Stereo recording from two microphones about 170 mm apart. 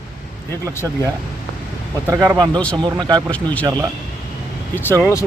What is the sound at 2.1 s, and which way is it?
Speech, 15° right (ahead or behind).